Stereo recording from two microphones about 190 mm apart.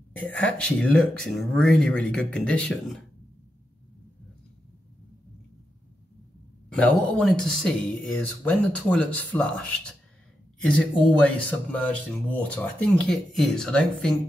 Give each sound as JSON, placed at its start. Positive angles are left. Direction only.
{"t": 0.2, "sound": "speech", "side_deg": 5}
{"t": 6.7, "sound": "speech", "side_deg": 5}